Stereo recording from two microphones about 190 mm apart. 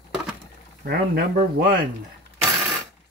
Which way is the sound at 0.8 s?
55° right (ahead or behind).